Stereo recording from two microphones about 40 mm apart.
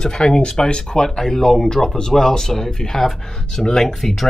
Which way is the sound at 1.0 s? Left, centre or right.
Centre.